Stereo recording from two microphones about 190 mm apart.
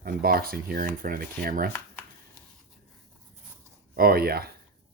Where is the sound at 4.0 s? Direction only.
55° right (ahead or behind).